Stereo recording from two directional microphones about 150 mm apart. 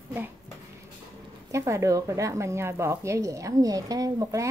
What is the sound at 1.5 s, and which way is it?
Speech, 20° right (ahead or behind).